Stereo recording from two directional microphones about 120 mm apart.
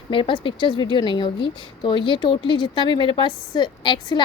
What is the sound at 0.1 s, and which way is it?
A woman's voice, 45° left (ahead or behind).